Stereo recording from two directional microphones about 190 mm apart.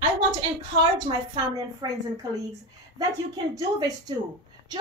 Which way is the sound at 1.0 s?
20° right (ahead or behind).